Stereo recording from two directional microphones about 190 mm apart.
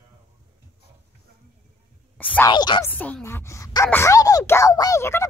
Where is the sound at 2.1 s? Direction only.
10° left (ahead or behind).